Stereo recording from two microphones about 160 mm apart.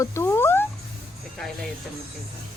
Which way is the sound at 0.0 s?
15° left (ahead or behind).